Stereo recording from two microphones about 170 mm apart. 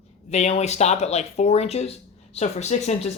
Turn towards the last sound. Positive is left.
turn(degrees=40)  # may be behind; listen again after turning